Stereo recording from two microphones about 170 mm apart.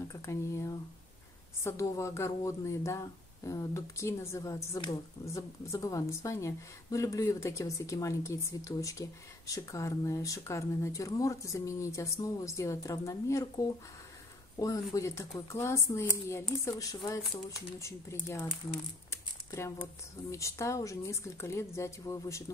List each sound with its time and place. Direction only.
0.1 s a woman's voice: 15° left (ahead or behind)